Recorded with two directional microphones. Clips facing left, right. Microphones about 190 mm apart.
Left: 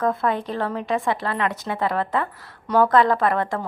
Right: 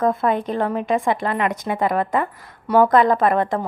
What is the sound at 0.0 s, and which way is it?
A woman's voice, 15° right (ahead or behind).